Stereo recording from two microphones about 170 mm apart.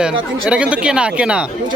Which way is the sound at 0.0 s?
5° right (ahead or behind).